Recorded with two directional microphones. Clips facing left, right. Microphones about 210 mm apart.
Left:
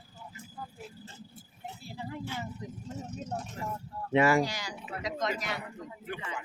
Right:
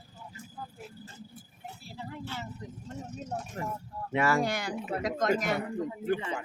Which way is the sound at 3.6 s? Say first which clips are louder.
Right 5 dB; 55° right (ahead or behind).